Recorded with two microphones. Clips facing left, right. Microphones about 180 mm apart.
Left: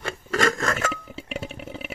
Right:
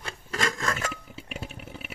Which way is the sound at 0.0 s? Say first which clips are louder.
Left 7 dB; 70° left (ahead or behind).